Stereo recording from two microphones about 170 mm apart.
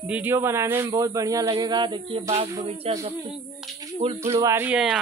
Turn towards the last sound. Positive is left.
turn(degrees=-5)  # may be behind; listen again after turning